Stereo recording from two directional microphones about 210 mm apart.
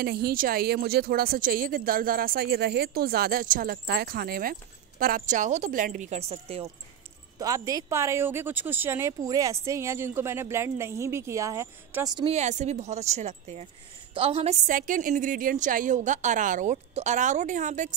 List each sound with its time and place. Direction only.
0.0 s speech: 50° right (ahead or behind); by 6.6 s 30° right (ahead or behind)
7.3 s speech: 15° right (ahead or behind)
12.3 s a woman's voice: 30° right (ahead or behind)